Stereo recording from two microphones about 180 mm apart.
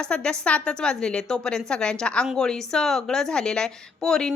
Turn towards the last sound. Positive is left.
turn(degrees=5)  # may be behind; listen again after turning